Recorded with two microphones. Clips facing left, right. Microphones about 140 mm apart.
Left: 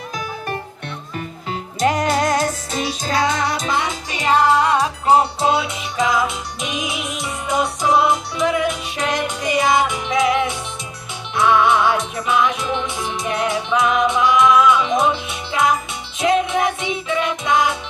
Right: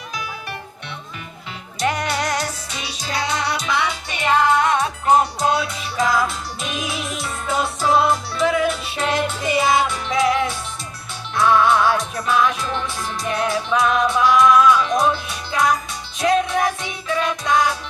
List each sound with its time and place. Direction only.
0.2 s music: 45° left (ahead or behind); by 17.7 s 20° left (ahead or behind)